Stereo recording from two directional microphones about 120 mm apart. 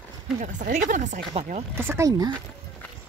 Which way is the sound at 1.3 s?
65° right (ahead or behind).